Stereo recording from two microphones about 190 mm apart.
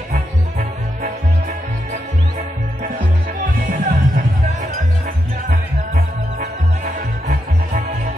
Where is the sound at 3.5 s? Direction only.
45° right (ahead or behind).